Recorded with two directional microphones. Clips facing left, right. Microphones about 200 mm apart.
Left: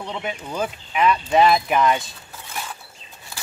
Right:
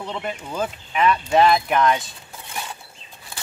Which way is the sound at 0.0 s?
5° left (ahead or behind).